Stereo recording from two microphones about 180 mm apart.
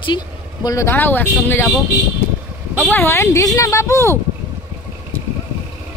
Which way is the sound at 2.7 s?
10° left (ahead or behind).